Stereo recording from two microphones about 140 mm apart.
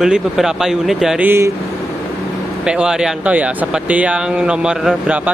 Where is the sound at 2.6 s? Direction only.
5° right (ahead or behind).